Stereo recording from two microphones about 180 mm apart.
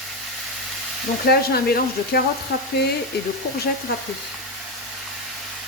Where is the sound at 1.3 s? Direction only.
60° left (ahead or behind).